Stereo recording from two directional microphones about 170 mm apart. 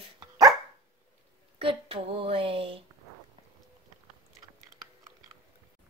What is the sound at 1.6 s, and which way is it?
Speech, 35° right (ahead or behind).